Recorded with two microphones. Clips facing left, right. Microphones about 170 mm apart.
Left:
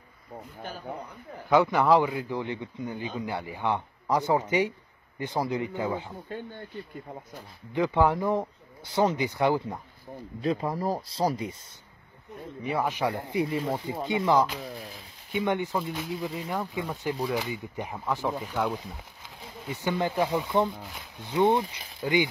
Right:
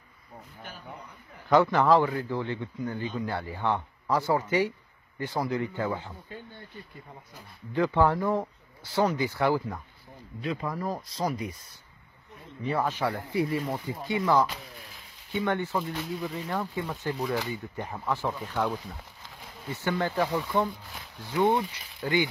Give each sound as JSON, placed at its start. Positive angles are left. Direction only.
{"t": 1.5, "sound": "speech", "side_deg": 10}
{"t": 7.7, "sound": "speech", "side_deg": 15}
{"t": 10.4, "sound": "speech", "side_deg": 35}
{"t": 12.6, "sound": "speech", "side_deg": 15}